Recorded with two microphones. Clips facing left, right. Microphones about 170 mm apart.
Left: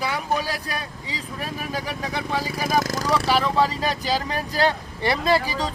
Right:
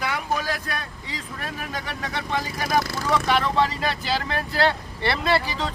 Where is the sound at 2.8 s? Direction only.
40° left (ahead or behind).